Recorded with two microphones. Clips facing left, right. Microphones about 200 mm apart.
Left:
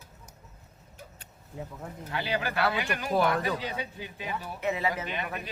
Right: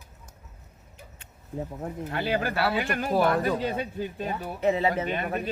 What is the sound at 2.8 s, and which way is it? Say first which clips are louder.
Speech: right 3 dB; 50° right (ahead or behind).